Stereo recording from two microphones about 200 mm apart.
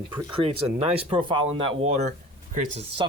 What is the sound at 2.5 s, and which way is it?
Speech, 40° right (ahead or behind).